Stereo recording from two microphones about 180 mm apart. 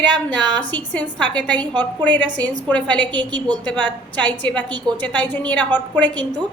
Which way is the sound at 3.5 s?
10° left (ahead or behind).